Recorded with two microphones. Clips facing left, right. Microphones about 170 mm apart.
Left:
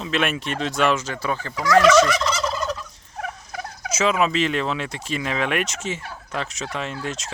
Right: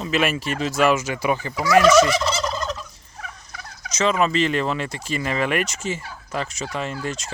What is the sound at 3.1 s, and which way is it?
Turkey, 50° left (ahead or behind).